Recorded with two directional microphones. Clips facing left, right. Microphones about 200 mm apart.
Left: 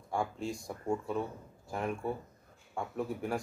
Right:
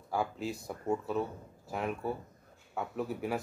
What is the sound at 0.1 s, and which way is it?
Speech, 5° right (ahead or behind).